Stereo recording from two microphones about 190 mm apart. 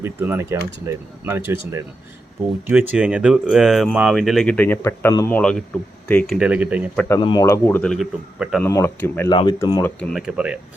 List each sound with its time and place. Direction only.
0.0 s speech: 10° right (ahead or behind)
2.6 s speech: 10° right (ahead or behind)
7.1 s speech: 20° left (ahead or behind)
7.4 s speech: 10° left (ahead or behind)
8.6 s speech: 15° left (ahead or behind)
9.3 s speech: 25° left (ahead or behind)
10.0 s speech: centre (ahead or behind)